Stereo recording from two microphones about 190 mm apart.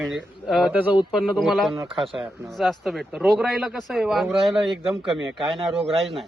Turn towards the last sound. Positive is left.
turn(degrees=0)  # may be behind; listen again after turning